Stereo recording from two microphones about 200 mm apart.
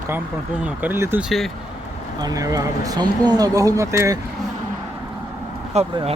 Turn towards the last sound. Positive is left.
turn(degrees=-35)  # may be behind; listen again after turning